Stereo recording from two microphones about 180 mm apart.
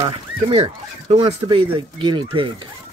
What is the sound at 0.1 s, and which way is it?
Speech, 30° right (ahead or behind).